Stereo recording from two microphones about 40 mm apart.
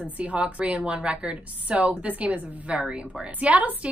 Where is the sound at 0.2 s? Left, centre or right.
Right.